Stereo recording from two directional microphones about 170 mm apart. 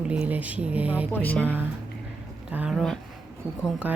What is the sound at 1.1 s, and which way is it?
Speech, 10° left (ahead or behind).